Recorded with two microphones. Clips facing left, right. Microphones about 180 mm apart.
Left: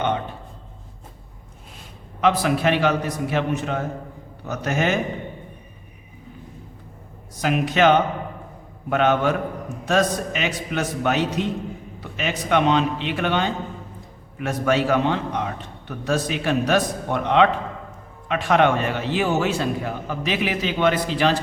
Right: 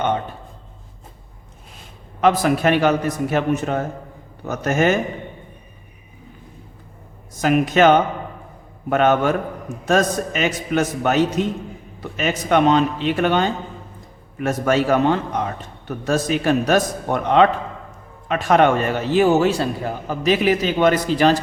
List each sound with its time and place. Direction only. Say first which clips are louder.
2.2 s a man's voice: right 3 dB; 45° right (ahead or behind)
7.3 s a man's voice: right 4 dB; 45° right (ahead or behind)